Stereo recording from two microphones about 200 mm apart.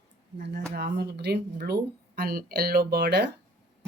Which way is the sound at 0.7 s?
55° right (ahead or behind).